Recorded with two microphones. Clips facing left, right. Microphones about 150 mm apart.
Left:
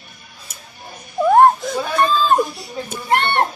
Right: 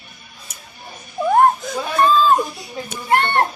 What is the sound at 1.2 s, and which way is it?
Laughter, 40° left (ahead or behind).